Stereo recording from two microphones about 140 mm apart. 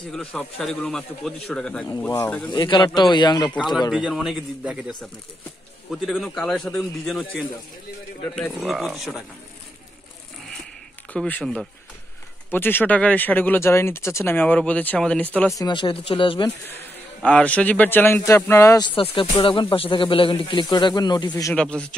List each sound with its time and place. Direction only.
0.1 s a man's voice: 10° left (ahead or behind)
2.0 s speech: 15° left (ahead or behind)
2.5 s speech: 30° left (ahead or behind)
3.5 s a man's voice: centre (ahead or behind)
11.1 s speech: 10° left (ahead or behind)
15.5 s speech: 30° left (ahead or behind)
17.2 s speech: 10° left (ahead or behind)
18.8 s speech: 35° left (ahead or behind)
21.5 s speech: 5° left (ahead or behind)